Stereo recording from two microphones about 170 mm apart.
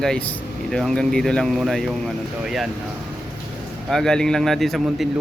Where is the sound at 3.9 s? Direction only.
Centre (ahead or behind).